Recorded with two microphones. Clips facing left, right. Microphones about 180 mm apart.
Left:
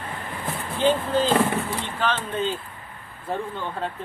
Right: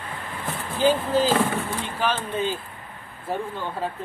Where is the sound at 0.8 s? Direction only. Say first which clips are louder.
Right 1 dB; 10° right (ahead or behind).